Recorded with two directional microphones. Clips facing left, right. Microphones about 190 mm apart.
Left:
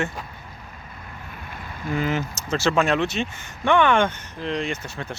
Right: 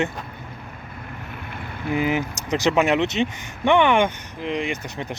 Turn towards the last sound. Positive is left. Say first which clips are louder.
# right 1 dB
turn(degrees=-15)  # may be behind; listen again after turning